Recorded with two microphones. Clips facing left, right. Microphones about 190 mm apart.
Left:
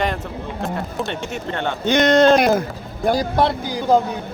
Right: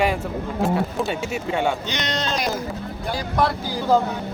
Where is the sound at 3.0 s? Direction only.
45° left (ahead or behind).